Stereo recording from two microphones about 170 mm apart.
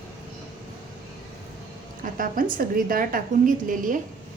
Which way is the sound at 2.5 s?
55° right (ahead or behind).